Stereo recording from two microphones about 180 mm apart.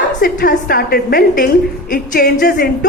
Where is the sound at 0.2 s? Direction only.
55° left (ahead or behind).